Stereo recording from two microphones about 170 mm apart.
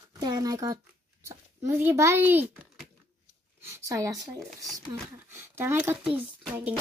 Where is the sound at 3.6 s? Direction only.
15° right (ahead or behind).